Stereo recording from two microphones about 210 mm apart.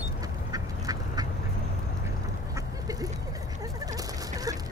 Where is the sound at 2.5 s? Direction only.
15° right (ahead or behind).